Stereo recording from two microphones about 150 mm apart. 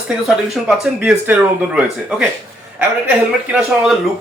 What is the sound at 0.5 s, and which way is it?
Speech, centre (ahead or behind).